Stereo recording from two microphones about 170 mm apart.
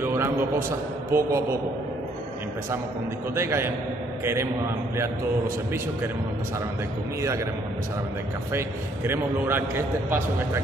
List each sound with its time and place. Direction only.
0.0 s a sound: 15° right (ahead or behind)
1.1 s a man's voice: 15° right (ahead or behind)
3.3 s a man's voice: 15° right (ahead or behind)
7.2 s a man's voice: 15° right (ahead or behind)
8.5 s a man's voice: 15° right (ahead or behind)